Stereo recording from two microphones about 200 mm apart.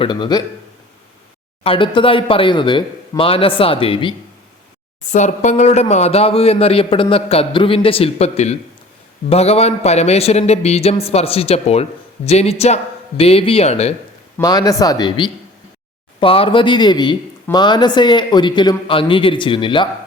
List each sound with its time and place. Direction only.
0.0 s speech: 20° left (ahead or behind)
1.6 s speech: 25° left (ahead or behind)
14.3 s speech: 20° left (ahead or behind)